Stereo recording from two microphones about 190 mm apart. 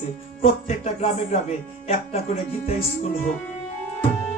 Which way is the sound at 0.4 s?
35° left (ahead or behind).